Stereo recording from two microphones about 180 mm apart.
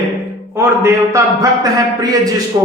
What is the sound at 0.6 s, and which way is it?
A man's voice, 15° right (ahead or behind).